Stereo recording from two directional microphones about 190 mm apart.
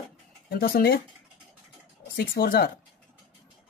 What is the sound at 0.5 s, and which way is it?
Speech, 50° left (ahead or behind).